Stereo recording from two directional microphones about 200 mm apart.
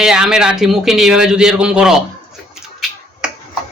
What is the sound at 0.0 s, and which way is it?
A man's voice, 5° right (ahead or behind).